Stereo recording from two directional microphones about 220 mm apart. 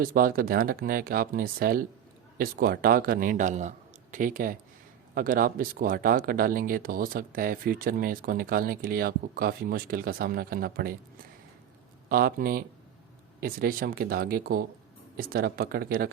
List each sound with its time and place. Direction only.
0.0 s speech: 40° right (ahead or behind)
12.0 s speech: 40° right (ahead or behind)